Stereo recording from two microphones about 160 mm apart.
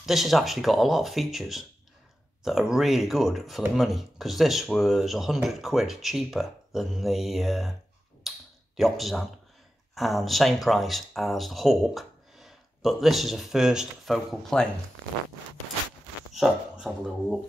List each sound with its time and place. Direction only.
0.0 s speech: centre (ahead or behind)
8.3 s a sound: centre (ahead or behind)
8.7 s speech: centre (ahead or behind)
16.3 s speech: centre (ahead or behind)